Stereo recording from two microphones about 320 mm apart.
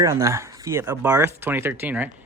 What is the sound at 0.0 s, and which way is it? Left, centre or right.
Speech, centre.